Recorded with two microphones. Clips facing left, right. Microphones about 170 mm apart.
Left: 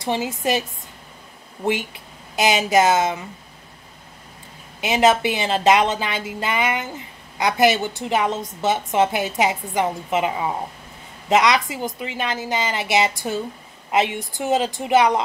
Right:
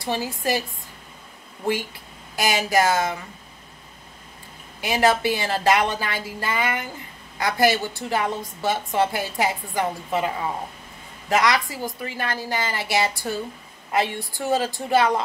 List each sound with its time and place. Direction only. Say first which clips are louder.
0.0 s a woman's voice: left 3 dB; 20° left (ahead or behind)
4.7 s a woman's voice: left 3 dB; 20° left (ahead or behind)